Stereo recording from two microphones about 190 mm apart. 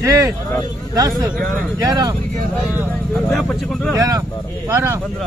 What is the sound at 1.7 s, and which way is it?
Speech, 20° right (ahead or behind).